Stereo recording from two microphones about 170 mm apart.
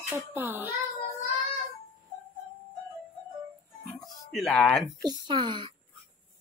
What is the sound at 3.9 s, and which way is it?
Music, centre (ahead or behind).